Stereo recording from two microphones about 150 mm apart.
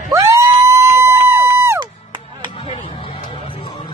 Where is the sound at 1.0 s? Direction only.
20° right (ahead or behind).